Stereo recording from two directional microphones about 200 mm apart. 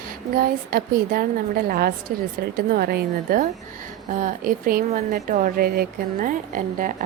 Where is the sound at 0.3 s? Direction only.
45° right (ahead or behind).